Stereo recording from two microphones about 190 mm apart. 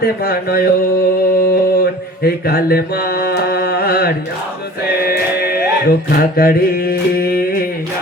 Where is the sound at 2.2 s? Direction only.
55° left (ahead or behind).